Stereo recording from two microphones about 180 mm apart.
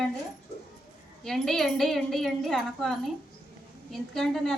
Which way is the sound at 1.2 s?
Centre (ahead or behind).